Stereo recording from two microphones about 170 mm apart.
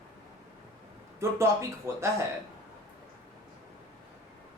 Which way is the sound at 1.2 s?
15° right (ahead or behind).